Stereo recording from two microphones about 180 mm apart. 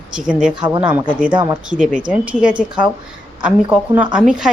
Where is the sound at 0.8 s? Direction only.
10° right (ahead or behind).